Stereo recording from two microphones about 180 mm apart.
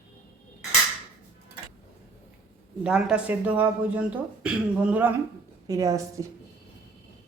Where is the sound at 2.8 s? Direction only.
5° right (ahead or behind).